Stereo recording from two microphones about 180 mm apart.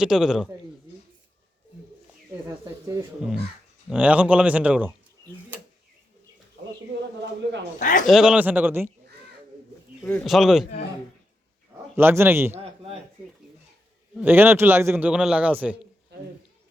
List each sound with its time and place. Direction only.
0.0 s a man's voice: 5° right (ahead or behind)
3.8 s a man's voice: 5° right (ahead or behind)
7.4 s a man's voice: 80° right
7.8 s speech: 45° left (ahead or behind)
8.0 s a man's voice: centre (ahead or behind)
10.2 s a man's voice: centre (ahead or behind)
11.9 s a man's voice: 15° right (ahead or behind)
12.5 s a sound: 30° right (ahead or behind)
14.2 s a man's voice: 10° right (ahead or behind)